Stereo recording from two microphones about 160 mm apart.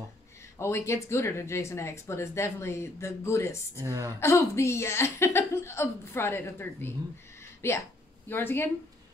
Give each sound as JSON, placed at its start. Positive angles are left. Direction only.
{"t": 0.6, "sound": "speech", "side_deg": 15}
{"t": 3.8, "sound": "a woman's voice", "side_deg": -20}
{"t": 4.2, "sound": "speech", "side_deg": 15}